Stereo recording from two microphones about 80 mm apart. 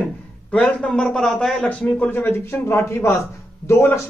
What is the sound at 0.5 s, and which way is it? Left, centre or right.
A man's voice, centre.